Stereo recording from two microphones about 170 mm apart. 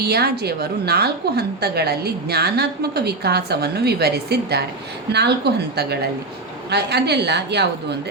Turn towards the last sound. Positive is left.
turn(degrees=-80)